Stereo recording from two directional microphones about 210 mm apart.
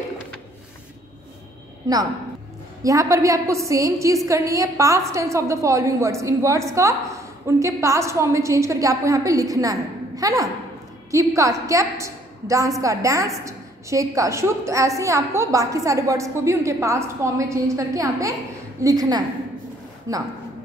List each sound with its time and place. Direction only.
2.8 s a woman's voice: 15° right (ahead or behind)